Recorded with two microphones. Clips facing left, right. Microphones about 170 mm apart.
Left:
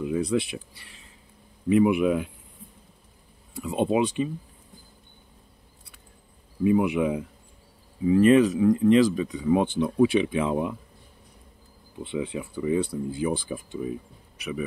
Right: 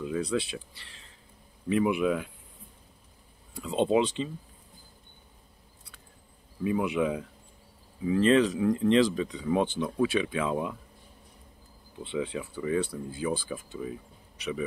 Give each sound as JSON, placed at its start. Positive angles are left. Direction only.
{"t": 0.0, "sound": "speech", "side_deg": 15}
{"t": 3.6, "sound": "speech", "side_deg": 10}
{"t": 6.6, "sound": "speech", "side_deg": 15}
{"t": 12.0, "sound": "speech", "side_deg": 15}